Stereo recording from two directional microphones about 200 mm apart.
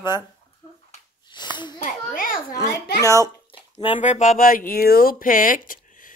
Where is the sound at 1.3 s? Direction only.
20° left (ahead or behind).